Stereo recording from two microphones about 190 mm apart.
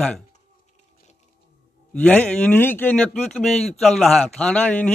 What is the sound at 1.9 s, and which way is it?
A man's voice, 5° left (ahead or behind).